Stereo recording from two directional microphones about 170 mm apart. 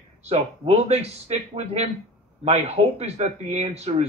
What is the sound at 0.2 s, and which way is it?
A man's voice, 40° right (ahead or behind).